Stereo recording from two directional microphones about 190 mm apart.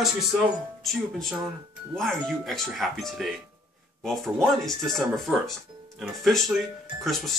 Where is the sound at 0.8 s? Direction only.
Centre (ahead or behind).